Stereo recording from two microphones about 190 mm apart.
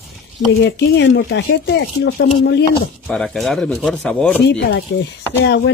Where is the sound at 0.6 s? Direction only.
65° left (ahead or behind).